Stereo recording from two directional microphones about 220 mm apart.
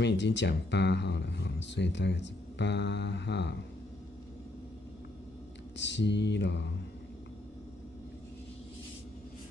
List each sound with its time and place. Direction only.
0.0 s speech: 55° left (ahead or behind)
5.8 s speech: 55° left (ahead or behind)